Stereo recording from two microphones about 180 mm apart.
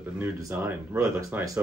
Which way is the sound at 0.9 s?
20° right (ahead or behind).